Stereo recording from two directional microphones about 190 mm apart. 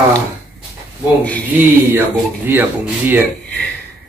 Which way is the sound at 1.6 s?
10° right (ahead or behind).